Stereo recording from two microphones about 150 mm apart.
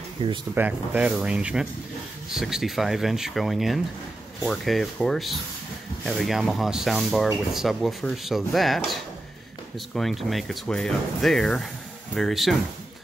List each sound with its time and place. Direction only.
0.2 s speech: 30° right (ahead or behind)
0.6 s speech: 10° right (ahead or behind)